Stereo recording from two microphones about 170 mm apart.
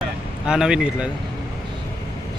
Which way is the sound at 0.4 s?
5° right (ahead or behind).